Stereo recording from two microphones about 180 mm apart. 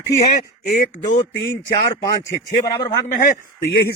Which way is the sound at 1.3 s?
70° left (ahead or behind).